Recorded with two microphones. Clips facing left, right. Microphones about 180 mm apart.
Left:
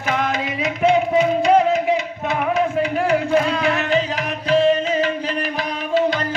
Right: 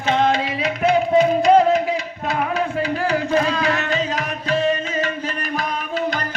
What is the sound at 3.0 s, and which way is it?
Music, 35° right (ahead or behind).